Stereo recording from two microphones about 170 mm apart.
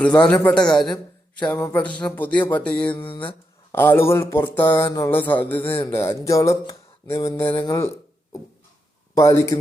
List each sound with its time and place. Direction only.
0.3 s a man's voice: 10° left (ahead or behind)
2.9 s speech: 30° left (ahead or behind)
3.7 s speech: 15° left (ahead or behind)
9.1 s speech: 15° left (ahead or behind)